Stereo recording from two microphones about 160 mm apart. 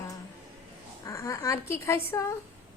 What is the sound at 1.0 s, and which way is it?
A woman's voice, 20° left (ahead or behind).